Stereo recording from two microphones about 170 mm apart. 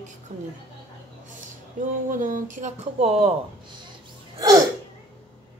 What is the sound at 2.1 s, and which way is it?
Speech, 50° right (ahead or behind).